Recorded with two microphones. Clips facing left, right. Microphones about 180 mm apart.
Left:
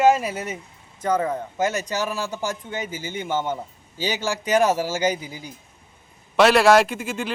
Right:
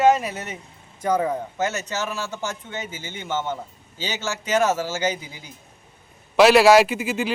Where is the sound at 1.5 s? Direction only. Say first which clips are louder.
Left 2 dB; 10° left (ahead or behind).